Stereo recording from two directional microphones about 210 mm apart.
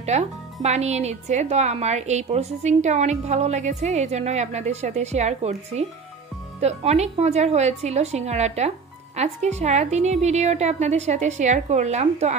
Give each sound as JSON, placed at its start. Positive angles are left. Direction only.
{"t": 0.0, "sound": "speech", "side_deg": -30}